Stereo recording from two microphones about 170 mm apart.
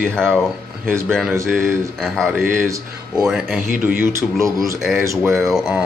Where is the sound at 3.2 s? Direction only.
Centre (ahead or behind).